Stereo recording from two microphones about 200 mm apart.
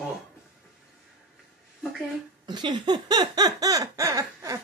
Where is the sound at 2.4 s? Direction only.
20° right (ahead or behind).